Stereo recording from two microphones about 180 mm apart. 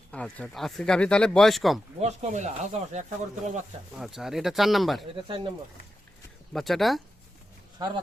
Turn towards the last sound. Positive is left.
turn(degrees=-25)  # may be behind; listen again after turning